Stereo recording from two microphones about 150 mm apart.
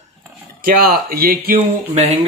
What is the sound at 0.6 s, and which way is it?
Speech, 70° right (ahead or behind).